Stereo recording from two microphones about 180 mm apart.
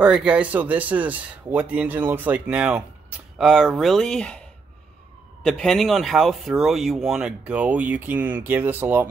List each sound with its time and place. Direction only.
0.0 s speech: 5° right (ahead or behind)
5.4 s speech: 5° left (ahead or behind)